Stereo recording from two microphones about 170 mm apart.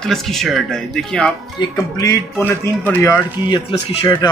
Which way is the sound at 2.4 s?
15° left (ahead or behind).